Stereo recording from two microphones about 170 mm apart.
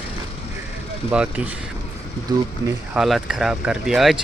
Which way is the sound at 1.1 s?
5° right (ahead or behind).